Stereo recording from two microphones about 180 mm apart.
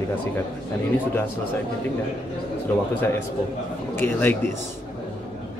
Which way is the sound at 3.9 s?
10° left (ahead or behind).